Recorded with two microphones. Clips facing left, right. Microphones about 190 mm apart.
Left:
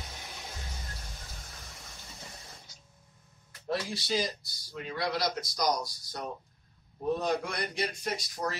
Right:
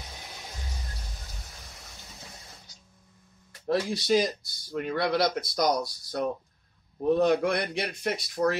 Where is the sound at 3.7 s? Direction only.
50° right (ahead or behind).